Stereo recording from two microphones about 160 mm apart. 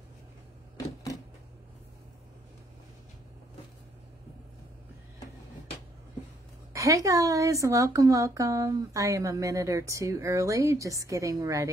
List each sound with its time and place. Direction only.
6.7 s a woman's voice: 20° right (ahead or behind)